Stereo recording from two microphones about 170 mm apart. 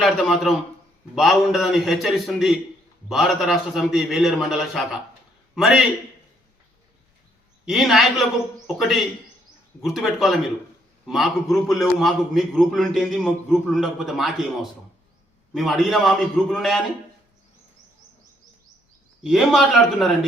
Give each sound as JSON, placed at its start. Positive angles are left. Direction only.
{"t": 0.0, "sound": "a man's voice", "side_deg": 0}
{"t": 7.6, "sound": "a man's voice", "side_deg": 0}
{"t": 19.2, "sound": "a man's voice", "side_deg": 0}